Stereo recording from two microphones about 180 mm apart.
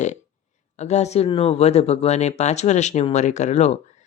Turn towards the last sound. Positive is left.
turn(degrees=40)  # may be behind; listen again after turning